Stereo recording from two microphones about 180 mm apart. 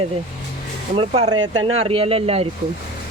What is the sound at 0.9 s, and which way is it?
Speech, 35° right (ahead or behind).